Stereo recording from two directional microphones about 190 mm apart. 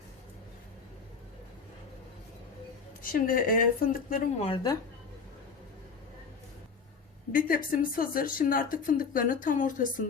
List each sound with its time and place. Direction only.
3.0 s speech: 50° left (ahead or behind)
4.4 s a woman's voice: 20° left (ahead or behind)
7.3 s speech: 45° left (ahead or behind)